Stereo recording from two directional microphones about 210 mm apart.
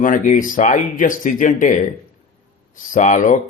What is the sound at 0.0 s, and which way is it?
Speech, 40° left (ahead or behind).